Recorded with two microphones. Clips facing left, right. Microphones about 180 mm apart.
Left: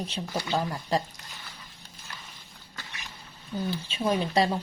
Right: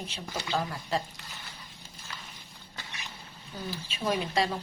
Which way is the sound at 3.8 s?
30° left (ahead or behind).